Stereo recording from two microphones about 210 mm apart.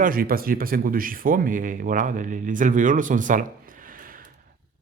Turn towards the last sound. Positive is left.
turn(degrees=-40)  # may be behind; listen again after turning